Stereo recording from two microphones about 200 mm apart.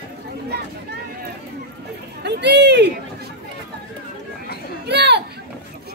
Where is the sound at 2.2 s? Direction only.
55° right (ahead or behind).